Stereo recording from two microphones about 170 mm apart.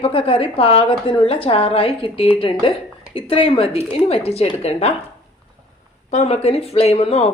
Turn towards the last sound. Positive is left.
turn(degrees=35)  # may be behind; listen again after turning